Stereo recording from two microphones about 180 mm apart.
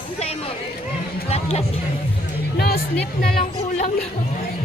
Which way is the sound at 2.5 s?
60° left (ahead or behind).